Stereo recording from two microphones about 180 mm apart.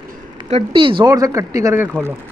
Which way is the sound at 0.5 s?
30° right (ahead or behind).